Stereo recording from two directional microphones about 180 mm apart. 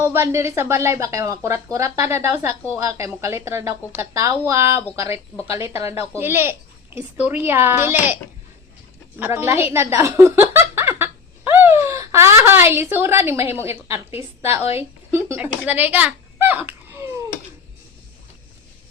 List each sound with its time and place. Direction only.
0.0 s speech: 15° right (ahead or behind)